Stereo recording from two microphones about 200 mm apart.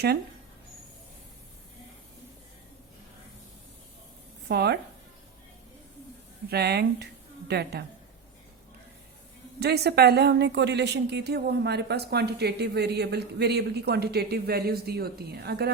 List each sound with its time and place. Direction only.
4.4 s a woman's voice: 55° right (ahead or behind)
6.5 s speech: 55° right (ahead or behind)
9.6 s a woman's voice: 55° right (ahead or behind)